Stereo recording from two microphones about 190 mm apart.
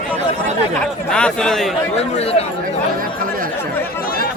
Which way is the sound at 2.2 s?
35° left (ahead or behind).